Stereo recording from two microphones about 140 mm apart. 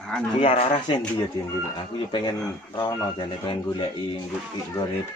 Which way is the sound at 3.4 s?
40° left (ahead or behind).